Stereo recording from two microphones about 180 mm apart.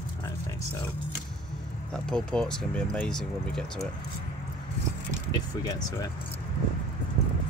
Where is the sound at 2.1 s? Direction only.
5° left (ahead or behind).